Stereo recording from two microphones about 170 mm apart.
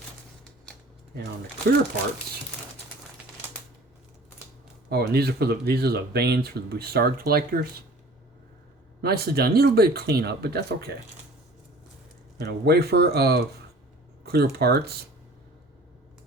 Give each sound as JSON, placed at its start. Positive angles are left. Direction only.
{"t": 4.9, "sound": "speech", "side_deg": -70}
{"t": 9.0, "sound": "speech", "side_deg": -65}
{"t": 12.4, "sound": "speech", "side_deg": -70}